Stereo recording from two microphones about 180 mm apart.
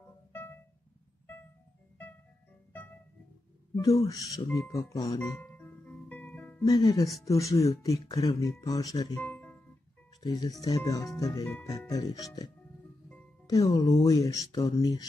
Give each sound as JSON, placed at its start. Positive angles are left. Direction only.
{"t": 0.0, "sound": "music", "side_deg": 10}
{"t": 3.7, "sound": "speech", "side_deg": 20}
{"t": 5.2, "sound": "music", "side_deg": 5}
{"t": 6.6, "sound": "speech", "side_deg": 20}
{"t": 9.2, "sound": "music", "side_deg": 10}
{"t": 10.2, "sound": "speech", "side_deg": 20}
{"t": 13.5, "sound": "speech", "side_deg": 20}